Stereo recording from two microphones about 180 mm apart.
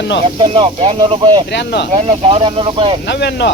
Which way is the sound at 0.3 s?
30° right (ahead or behind).